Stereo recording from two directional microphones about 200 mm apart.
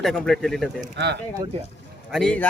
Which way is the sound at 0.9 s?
60° right (ahead or behind).